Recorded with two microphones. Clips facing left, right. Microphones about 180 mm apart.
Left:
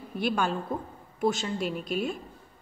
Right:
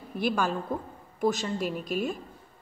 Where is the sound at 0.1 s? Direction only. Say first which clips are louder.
Even; centre (ahead or behind).